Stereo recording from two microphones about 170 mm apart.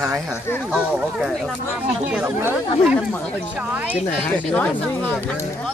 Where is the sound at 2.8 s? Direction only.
Centre (ahead or behind).